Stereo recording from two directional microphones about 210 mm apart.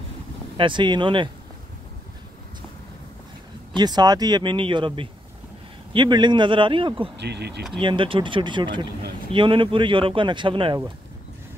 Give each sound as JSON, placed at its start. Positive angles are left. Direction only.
{"t": 0.6, "sound": "speech", "side_deg": -25}
{"t": 3.7, "sound": "speech", "side_deg": -20}
{"t": 7.2, "sound": "speech", "side_deg": -55}
{"t": 7.8, "sound": "speech", "side_deg": -25}